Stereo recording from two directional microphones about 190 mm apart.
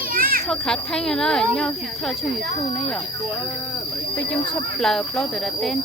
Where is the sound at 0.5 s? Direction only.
5° left (ahead or behind).